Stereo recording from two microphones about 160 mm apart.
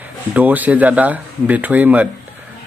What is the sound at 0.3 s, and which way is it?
Speech, 10° right (ahead or behind).